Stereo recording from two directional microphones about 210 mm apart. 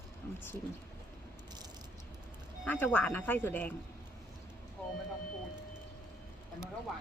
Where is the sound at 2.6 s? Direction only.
10° left (ahead or behind).